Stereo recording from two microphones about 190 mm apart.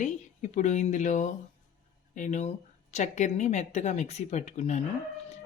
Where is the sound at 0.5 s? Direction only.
40° left (ahead or behind).